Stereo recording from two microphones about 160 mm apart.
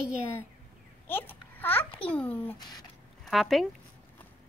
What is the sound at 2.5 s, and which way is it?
Speech, 25° left (ahead or behind).